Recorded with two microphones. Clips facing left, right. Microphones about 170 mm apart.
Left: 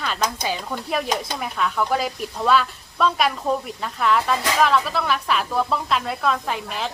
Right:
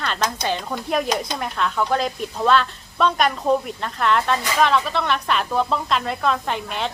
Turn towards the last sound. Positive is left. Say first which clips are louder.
# right 1 dB
turn(degrees=0)  # may be behind; listen again after turning